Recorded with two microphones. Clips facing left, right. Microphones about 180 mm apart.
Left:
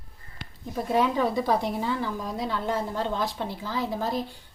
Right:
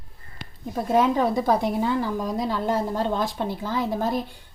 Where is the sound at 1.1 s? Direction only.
45° right (ahead or behind).